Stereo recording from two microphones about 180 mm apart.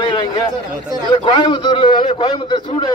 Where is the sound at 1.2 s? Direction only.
30° left (ahead or behind).